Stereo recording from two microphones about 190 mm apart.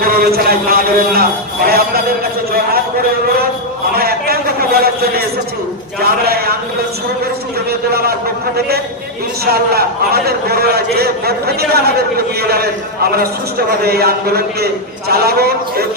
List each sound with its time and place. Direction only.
0.0 s a man's voice: 50° right (ahead or behind)
3.9 s a man's voice: 50° right (ahead or behind)
7.7 s a man's voice: 55° right (ahead or behind)
9.5 s a man's voice: 55° right (ahead or behind)